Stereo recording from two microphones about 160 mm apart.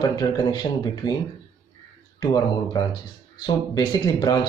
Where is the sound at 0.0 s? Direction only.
25° left (ahead or behind).